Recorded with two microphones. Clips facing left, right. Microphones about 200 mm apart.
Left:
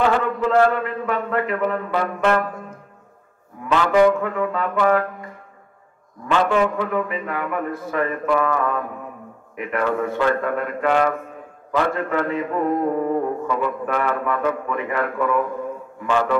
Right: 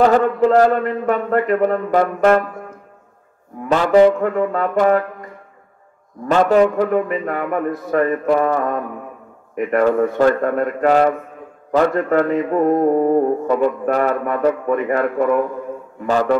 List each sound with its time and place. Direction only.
0.0 s a man's voice: 40° right (ahead or behind)
3.6 s music: 40° right (ahead or behind)
4.2 s a man's voice: 40° right (ahead or behind)
6.2 s music: 40° right (ahead or behind)